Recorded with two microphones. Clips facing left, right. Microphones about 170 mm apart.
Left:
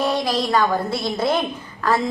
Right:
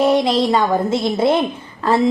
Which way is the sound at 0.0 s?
20° right (ahead or behind).